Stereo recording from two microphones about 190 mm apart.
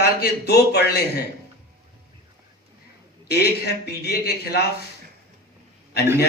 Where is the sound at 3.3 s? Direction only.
60° left (ahead or behind).